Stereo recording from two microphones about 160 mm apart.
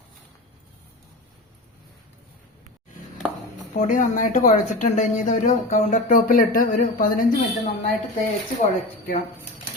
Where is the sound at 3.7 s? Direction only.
50° left (ahead or behind).